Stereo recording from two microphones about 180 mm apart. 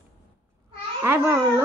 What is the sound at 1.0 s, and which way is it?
Speech, 15° right (ahead or behind).